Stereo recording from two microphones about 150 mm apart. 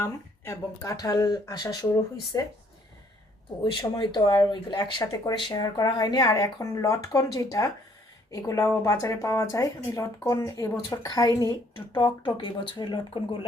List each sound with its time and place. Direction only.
0.0 s speech: 20° left (ahead or behind)
3.6 s speech: 35° left (ahead or behind)